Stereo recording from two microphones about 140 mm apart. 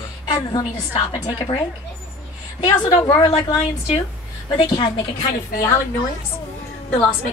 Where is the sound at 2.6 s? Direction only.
30° left (ahead or behind).